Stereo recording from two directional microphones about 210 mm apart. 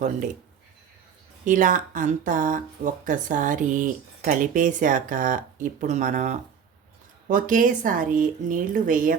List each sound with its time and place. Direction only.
1.5 s speech: 40° right (ahead or behind)